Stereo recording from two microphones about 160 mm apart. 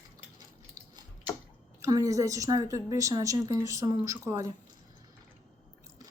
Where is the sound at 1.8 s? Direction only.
20° right (ahead or behind).